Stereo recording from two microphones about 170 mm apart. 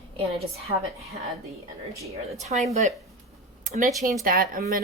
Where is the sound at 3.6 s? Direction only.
45° right (ahead or behind).